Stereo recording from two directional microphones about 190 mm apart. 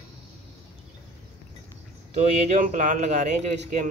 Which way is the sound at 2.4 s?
40° right (ahead or behind).